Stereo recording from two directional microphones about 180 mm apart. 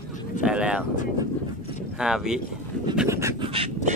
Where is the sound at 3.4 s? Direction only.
30° right (ahead or behind).